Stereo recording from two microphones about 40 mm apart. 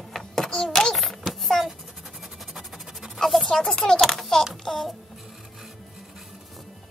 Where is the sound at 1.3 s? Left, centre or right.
Centre.